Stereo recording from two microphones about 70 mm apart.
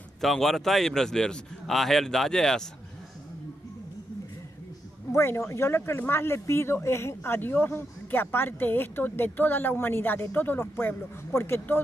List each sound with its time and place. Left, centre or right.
0.2 s a man's voice: centre
5.1 s speech: left